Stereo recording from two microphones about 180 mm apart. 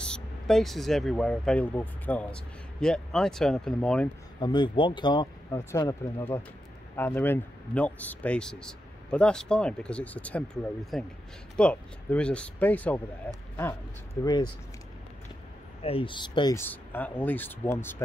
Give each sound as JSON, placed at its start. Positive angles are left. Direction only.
{"t": 0.0, "sound": "speech", "side_deg": 5}
{"t": 4.4, "sound": "a man's voice", "side_deg": 25}
{"t": 14.2, "sound": "speech", "side_deg": 25}
{"t": 15.8, "sound": "speech", "side_deg": 30}
{"t": 16.5, "sound": "a man's voice", "side_deg": 10}